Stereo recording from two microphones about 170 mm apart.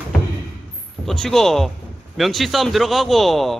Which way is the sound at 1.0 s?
5° left (ahead or behind).